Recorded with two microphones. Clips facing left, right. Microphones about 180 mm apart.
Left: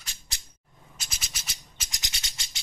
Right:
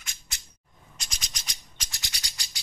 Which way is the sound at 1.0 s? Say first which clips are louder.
Even; 5° left (ahead or behind).